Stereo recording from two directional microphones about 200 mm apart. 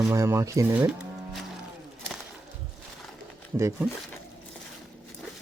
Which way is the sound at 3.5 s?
15° right (ahead or behind).